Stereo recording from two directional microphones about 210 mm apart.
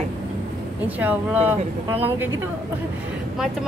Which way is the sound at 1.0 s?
10° right (ahead or behind).